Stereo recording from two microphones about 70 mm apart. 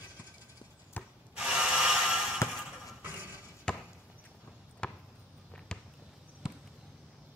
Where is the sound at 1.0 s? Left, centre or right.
Left.